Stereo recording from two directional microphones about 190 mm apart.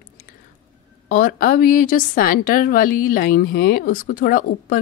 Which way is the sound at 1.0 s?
50° left (ahead or behind).